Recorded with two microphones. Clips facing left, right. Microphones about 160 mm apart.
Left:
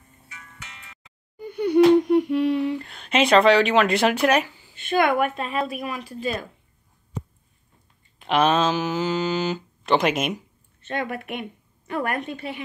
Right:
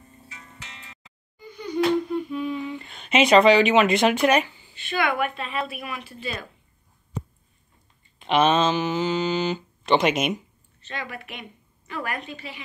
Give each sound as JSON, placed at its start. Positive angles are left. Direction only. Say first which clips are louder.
{"t": 0.3, "sound": "music", "louder": "left 1 dB", "side_deg": -30}
{"t": 1.4, "sound": "humming", "louder": "left 8 dB", "side_deg": 60}
{"t": 2.8, "sound": "speech", "louder": "right 1 dB", "side_deg": 0}
{"t": 4.7, "sound": "speech", "louder": "left 5 dB", "side_deg": 50}
{"t": 8.2, "sound": "speech", "louder": "even", "side_deg": 0}
{"t": 10.8, "sound": "a woman's voice", "louder": "left 7 dB", "side_deg": 55}